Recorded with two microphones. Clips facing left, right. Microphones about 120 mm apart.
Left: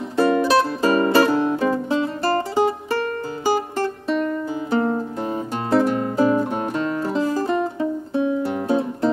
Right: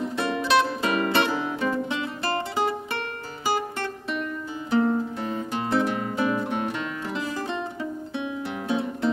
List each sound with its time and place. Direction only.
0.1 s music: 35° left (ahead or behind)
3.7 s music: 35° left (ahead or behind)